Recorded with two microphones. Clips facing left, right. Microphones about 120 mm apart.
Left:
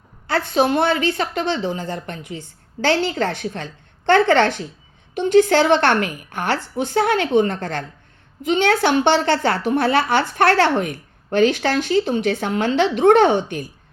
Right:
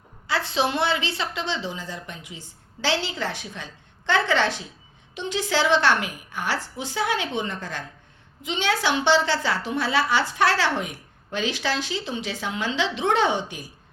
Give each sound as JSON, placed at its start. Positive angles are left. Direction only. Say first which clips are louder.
{"t": 0.3, "sound": "a woman's voice", "louder": "left 6 dB", "side_deg": 50}